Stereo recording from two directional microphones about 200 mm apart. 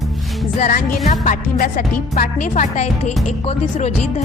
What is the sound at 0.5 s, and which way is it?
A woman's voice, 40° left (ahead or behind).